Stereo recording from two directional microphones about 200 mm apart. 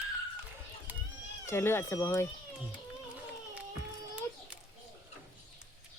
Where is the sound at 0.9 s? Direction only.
10° right (ahead or behind).